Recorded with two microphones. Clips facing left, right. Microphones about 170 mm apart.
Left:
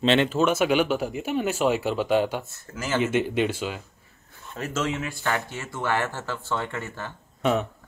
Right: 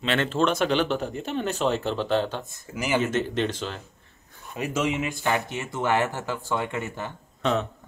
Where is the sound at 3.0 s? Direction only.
10° left (ahead or behind).